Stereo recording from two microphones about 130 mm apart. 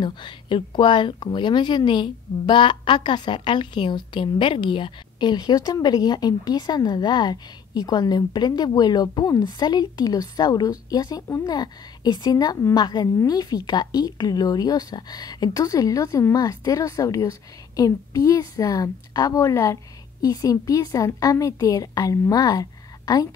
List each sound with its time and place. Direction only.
0.0 s a woman's voice: 35° left (ahead or behind)